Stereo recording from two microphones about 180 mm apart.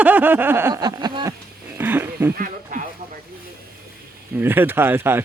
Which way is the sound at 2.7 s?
50° right (ahead or behind).